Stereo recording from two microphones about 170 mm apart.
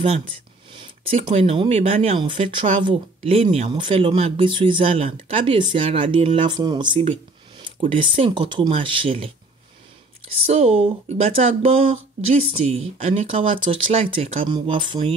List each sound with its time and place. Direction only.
0.7 s speech: 30° right (ahead or behind)
10.4 s speech: 40° right (ahead or behind)